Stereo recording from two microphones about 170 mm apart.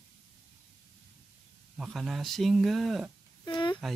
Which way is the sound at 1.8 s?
Centre (ahead or behind).